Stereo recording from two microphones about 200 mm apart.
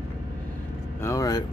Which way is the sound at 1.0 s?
15° left (ahead or behind).